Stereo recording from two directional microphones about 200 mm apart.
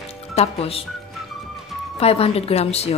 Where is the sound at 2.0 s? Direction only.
30° left (ahead or behind).